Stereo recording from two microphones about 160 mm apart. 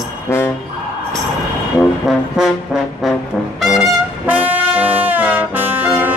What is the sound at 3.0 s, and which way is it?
Trombone, centre (ahead or behind).